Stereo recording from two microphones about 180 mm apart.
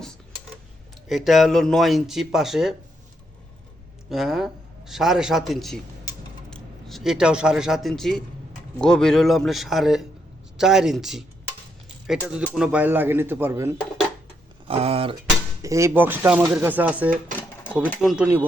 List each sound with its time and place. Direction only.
1.0 s speech: centre (ahead or behind)
4.1 s speech: centre (ahead or behind)
14.7 s speech: 35° right (ahead or behind)
15.6 s speech: 15° right (ahead or behind); by 18.3 s centre (ahead or behind)